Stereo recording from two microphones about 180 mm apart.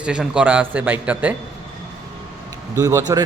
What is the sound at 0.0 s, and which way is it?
A man's voice, 5° right (ahead or behind).